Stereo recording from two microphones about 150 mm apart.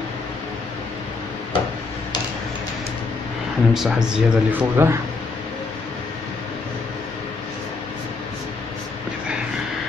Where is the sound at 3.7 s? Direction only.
5° right (ahead or behind).